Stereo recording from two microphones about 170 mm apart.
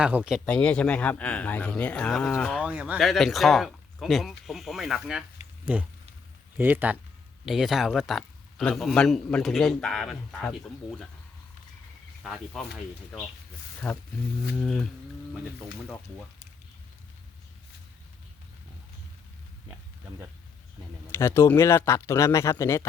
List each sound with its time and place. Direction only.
0.0 s a man's voice: 5° right (ahead or behind)
0.4 s a man's voice: 5° left (ahead or behind)
2.6 s a man's voice: 5° right (ahead or behind)
6.6 s a man's voice: 10° right (ahead or behind)
12.2 s a man's voice: centre (ahead or behind)
13.8 s a man's voice: 10° left (ahead or behind)
21.1 s speech: 15° left (ahead or behind)